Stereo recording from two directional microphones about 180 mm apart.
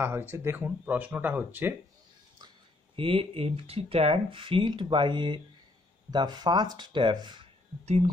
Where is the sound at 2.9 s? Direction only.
30° right (ahead or behind).